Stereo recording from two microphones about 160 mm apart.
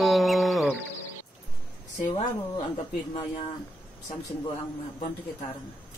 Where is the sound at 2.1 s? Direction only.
30° left (ahead or behind).